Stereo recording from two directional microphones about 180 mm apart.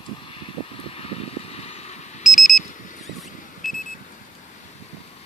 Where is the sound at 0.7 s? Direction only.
35° left (ahead or behind).